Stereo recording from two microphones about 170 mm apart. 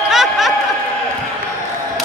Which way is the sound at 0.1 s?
Centre (ahead or behind).